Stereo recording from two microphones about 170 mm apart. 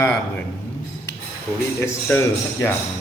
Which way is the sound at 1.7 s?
15° left (ahead or behind).